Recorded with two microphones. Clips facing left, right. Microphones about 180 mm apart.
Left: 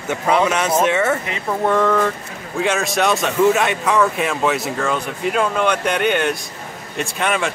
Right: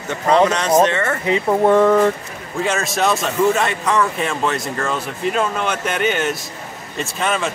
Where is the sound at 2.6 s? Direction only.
Centre (ahead or behind).